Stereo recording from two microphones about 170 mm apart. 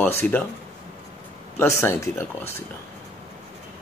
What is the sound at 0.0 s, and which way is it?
Speech, 10° left (ahead or behind).